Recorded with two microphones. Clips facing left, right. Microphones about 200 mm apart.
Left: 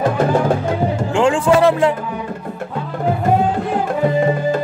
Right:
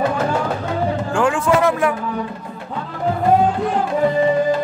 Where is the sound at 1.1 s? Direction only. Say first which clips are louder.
Left 4 dB; 25° left (ahead or behind).